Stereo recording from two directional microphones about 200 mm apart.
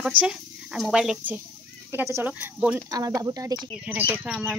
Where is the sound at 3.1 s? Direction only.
15° right (ahead or behind).